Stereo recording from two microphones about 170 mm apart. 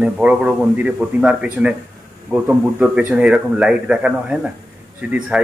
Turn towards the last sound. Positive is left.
turn(degrees=-10)  # may be behind; listen again after turning